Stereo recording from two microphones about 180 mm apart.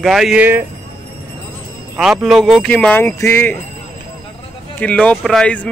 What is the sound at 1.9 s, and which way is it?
Speech, centre (ahead or behind).